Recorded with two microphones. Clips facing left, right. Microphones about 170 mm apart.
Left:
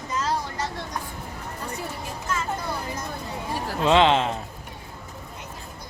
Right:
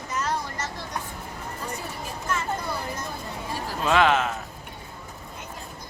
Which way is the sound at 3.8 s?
25° left (ahead or behind).